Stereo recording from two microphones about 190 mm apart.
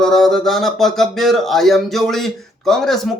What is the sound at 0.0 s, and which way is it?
Speech, centre (ahead or behind).